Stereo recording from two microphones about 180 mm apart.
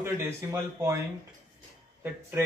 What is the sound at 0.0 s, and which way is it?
Speech, 15° right (ahead or behind).